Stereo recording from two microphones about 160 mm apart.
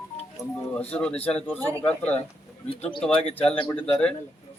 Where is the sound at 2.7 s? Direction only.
35° left (ahead or behind).